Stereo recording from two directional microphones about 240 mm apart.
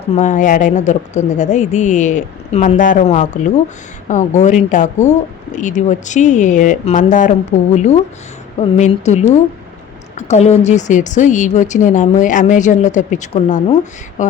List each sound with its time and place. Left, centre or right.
0.0 s a woman's voice: left
8.5 s a woman's voice: left